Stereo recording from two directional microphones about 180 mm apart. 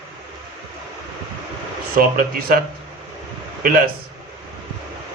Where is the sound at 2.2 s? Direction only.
55° right (ahead or behind).